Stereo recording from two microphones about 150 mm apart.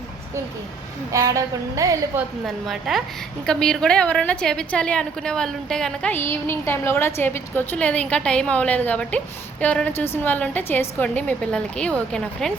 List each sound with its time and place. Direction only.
1.1 s a woman's voice: 20° right (ahead or behind)
2.6 s a woman's voice: centre (ahead or behind)